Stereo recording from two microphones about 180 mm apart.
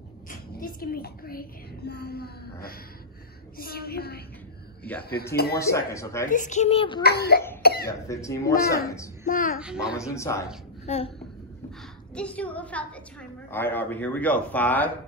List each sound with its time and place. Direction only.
0.3 s a sound: 50° left (ahead or behind)
3.5 s a woman's voice: 60° left (ahead or behind)
5.6 s a man's voice: 15° left (ahead or behind)
6.2 s a child's voice: 45° left (ahead or behind)
7.0 s a child's voice: 60° left (ahead or behind)
7.6 s cough: 60° left (ahead or behind)
8.1 s a man's voice: 15° left (ahead or behind)
9.2 s a child's voice: 50° left (ahead or behind)
9.6 s a child's voice: 5° right (ahead or behind)
9.9 s a man's voice: 15° left (ahead or behind)
10.9 s a child's voice: 35° left (ahead or behind)
12.2 s a man's voice: 5° left (ahead or behind)